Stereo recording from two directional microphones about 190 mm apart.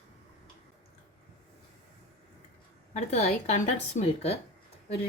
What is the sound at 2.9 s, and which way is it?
A woman's voice, 35° left (ahead or behind).